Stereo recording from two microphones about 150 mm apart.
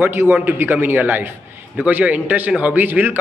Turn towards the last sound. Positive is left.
turn(degrees=-15)  # may be behind; listen again after turning